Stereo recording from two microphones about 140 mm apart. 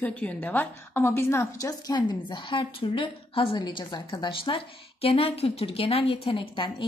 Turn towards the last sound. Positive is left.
turn(degrees=35)  # may be behind; listen again after turning